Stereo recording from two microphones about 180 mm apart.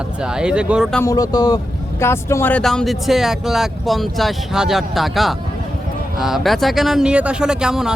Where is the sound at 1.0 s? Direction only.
20° left (ahead or behind).